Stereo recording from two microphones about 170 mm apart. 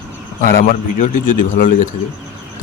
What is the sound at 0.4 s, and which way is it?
A man's voice, 55° left (ahead or behind).